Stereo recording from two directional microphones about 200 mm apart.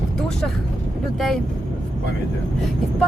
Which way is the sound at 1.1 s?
Centre (ahead or behind).